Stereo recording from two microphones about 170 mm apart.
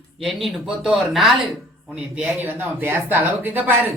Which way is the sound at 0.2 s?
Centre (ahead or behind).